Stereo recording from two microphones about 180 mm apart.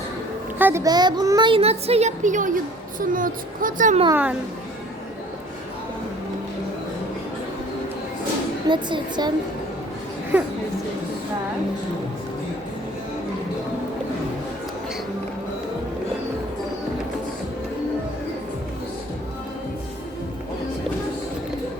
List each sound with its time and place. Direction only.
0.6 s a child's voice: 15° right (ahead or behind); by 4.0 s 45° right (ahead or behind)
4.1 s a woman's voice: 10° right (ahead or behind)
8.7 s speech: 25° right (ahead or behind)